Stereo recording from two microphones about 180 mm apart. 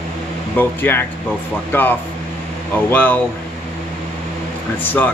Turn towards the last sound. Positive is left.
turn(degrees=10)  # may be behind; listen again after turning